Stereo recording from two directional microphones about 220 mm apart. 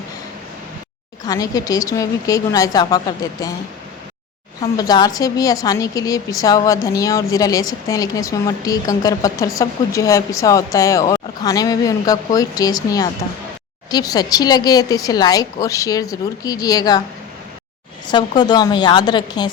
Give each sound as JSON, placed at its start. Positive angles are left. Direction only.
{"t": 1.2, "sound": "a woman's voice", "side_deg": 15}
{"t": 4.6, "sound": "a woman's voice", "side_deg": 20}
{"t": 18.1, "sound": "a woman's voice", "side_deg": 20}